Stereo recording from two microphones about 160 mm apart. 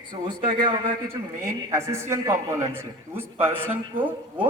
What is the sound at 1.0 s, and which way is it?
A man's voice, 20° right (ahead or behind).